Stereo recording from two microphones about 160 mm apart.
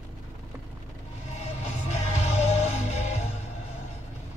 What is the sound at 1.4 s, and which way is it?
Music, 45° left (ahead or behind).